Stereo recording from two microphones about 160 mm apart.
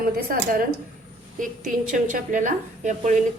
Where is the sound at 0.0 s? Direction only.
65° right (ahead or behind).